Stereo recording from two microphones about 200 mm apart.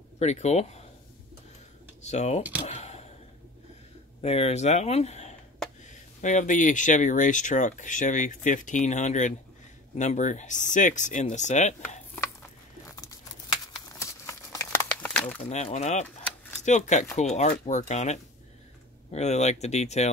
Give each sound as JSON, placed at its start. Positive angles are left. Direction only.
{"t": 0.2, "sound": "speech", "side_deg": 35}
{"t": 2.0, "sound": "speech", "side_deg": 35}
{"t": 2.6, "sound": "a sound", "side_deg": 30}
{"t": 4.2, "sound": "speech", "side_deg": 30}
{"t": 13.9, "sound": "crumpling", "side_deg": 15}
{"t": 15.4, "sound": "speech", "side_deg": 35}